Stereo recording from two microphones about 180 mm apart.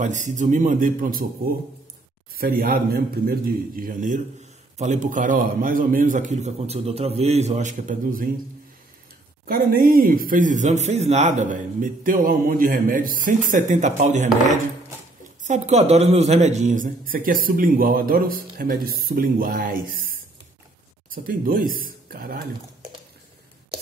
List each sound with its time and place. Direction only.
0.0 s a man's voice: 45° right (ahead or behind)
2.3 s a man's voice: 55° right (ahead or behind)
9.5 s a man's voice: 55° right (ahead or behind)
15.4 s a man's voice: 40° right (ahead or behind)
21.1 s speech: 50° right (ahead or behind)